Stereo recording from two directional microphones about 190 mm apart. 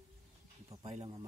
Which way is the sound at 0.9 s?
30° right (ahead or behind).